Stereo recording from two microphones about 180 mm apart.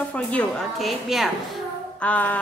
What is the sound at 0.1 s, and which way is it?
A woman's voice, 5° left (ahead or behind).